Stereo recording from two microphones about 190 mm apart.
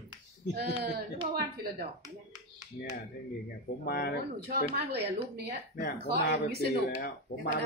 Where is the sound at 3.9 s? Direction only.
55° left (ahead or behind).